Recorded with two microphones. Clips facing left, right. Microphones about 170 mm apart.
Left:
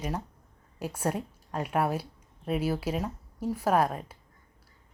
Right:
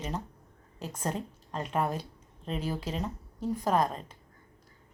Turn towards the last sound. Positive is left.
turn(degrees=10)  # may be behind; listen again after turning